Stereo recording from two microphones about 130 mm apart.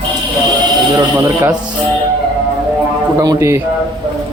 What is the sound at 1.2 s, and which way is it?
Speech, 20° right (ahead or behind).